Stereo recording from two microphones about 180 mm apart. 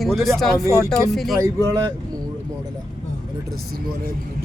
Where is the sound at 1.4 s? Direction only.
20° right (ahead or behind).